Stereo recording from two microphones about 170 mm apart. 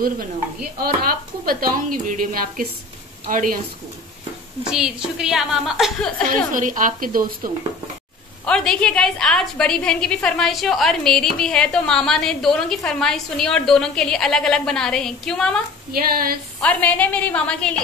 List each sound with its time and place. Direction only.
0.7 s a woman's voice: 60° right (ahead or behind)
4.6 s a woman's voice: 5° right (ahead or behind)
6.5 s a woman's voice: 50° right (ahead or behind)
8.5 s a woman's voice: 5° left (ahead or behind)
15.9 s speech: 60° right (ahead or behind)
16.5 s a woman's voice: 10° left (ahead or behind)